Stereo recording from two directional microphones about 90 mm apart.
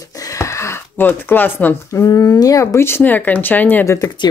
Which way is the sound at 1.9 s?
35° left (ahead or behind).